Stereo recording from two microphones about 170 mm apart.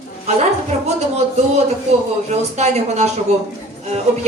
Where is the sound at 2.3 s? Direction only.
40° right (ahead or behind).